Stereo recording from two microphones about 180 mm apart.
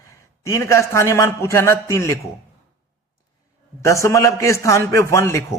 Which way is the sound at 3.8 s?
15° left (ahead or behind).